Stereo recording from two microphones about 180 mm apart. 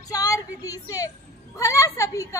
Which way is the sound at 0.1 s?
20° left (ahead or behind).